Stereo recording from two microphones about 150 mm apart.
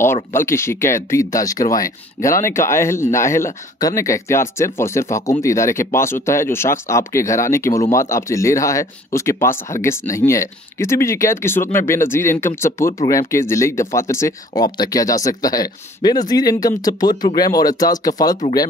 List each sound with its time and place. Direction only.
0.0 s speech: 15° left (ahead or behind)